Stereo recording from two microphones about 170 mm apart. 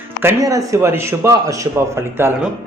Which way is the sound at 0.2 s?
15° right (ahead or behind).